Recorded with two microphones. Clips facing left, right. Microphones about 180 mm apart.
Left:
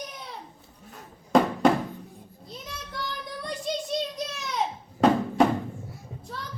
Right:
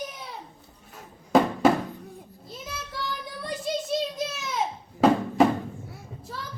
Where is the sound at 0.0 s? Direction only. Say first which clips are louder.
Right 2 dB; centre (ahead or behind).